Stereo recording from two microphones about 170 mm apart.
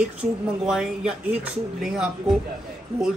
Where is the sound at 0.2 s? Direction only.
5° right (ahead or behind).